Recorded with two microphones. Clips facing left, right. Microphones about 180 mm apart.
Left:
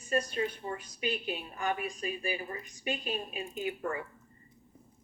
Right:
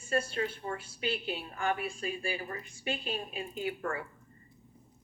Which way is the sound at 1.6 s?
30° right (ahead or behind).